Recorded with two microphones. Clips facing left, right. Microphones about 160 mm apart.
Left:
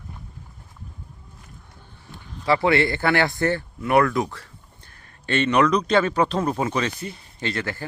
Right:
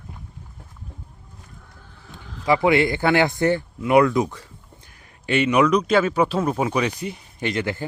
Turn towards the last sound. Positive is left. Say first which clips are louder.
# right 3 dB
turn(degrees=-15)  # may be behind; listen again after turning